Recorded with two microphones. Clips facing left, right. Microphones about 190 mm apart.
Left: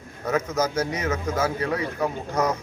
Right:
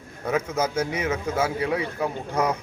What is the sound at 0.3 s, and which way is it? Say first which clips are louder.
A man's voice: left 1 dB; 10° right (ahead or behind).